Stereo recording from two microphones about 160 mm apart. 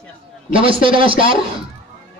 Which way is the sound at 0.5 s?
35° right (ahead or behind).